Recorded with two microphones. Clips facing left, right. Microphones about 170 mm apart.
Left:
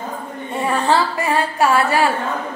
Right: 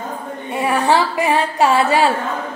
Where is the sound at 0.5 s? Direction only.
10° right (ahead or behind).